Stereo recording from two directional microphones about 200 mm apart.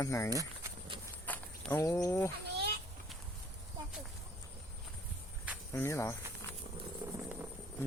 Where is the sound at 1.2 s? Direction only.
10° left (ahead or behind).